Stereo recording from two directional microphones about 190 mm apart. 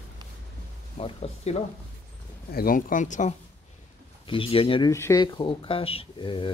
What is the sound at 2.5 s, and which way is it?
Speech, 50° left (ahead or behind).